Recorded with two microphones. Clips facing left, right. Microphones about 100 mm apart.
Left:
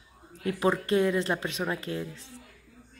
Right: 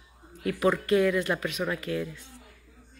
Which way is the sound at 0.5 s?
30° left (ahead or behind).